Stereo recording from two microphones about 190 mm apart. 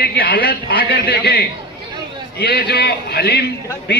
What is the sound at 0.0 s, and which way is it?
A man's voice, 55° left (ahead or behind).